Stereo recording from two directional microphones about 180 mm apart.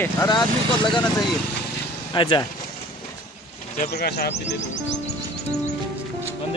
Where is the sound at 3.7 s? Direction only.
55° left (ahead or behind); by 4.6 s 70° left (ahead or behind).